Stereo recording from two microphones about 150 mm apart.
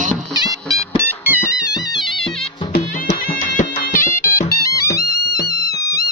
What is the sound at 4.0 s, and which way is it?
Music, 15° left (ahead or behind).